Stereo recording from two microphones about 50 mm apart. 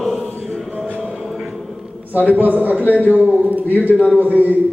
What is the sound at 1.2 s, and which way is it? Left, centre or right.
Music, centre.